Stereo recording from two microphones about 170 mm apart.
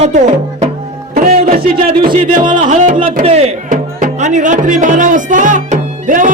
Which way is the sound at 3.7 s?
50° right (ahead or behind).